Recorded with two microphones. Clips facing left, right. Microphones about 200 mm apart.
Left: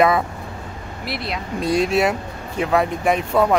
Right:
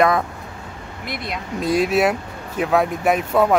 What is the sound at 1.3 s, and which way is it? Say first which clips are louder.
Speech: even; centre (ahead or behind).